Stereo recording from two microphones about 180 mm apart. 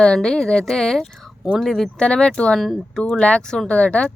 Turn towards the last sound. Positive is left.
turn(degrees=5)  # may be behind; listen again after turning